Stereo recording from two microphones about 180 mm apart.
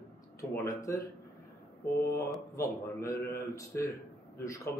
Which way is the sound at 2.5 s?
15° left (ahead or behind).